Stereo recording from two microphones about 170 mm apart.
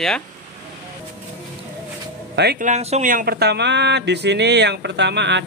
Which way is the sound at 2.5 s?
45° right (ahead or behind).